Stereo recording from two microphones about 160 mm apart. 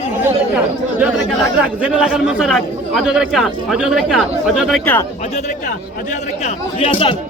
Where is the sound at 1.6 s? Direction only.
5° right (ahead or behind).